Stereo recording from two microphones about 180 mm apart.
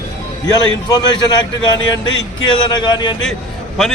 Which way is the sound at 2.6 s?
25° left (ahead or behind).